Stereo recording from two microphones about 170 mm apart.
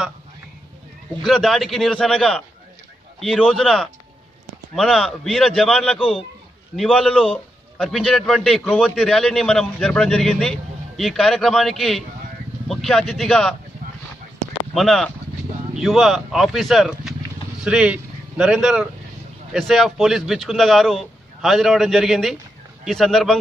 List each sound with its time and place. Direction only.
1.2 s a man's voice: centre (ahead or behind)
5.9 s a man's voice: 35° left (ahead or behind)
6.8 s a man's voice: 5° left (ahead or behind)
14.7 s a man's voice: centre (ahead or behind)